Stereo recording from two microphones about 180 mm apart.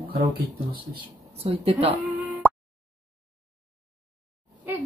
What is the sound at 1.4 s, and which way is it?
Speech, 35° right (ahead or behind).